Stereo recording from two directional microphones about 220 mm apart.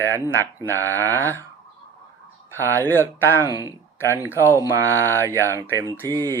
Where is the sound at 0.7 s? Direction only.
15° right (ahead or behind).